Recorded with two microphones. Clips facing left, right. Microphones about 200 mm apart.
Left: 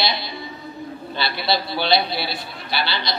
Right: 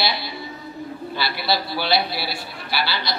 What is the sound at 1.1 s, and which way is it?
A man's voice, 20° left (ahead or behind).